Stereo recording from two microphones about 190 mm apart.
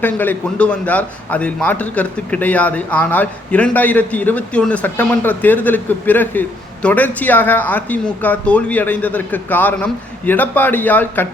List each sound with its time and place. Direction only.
0.0 s a man's voice: 10° left (ahead or behind)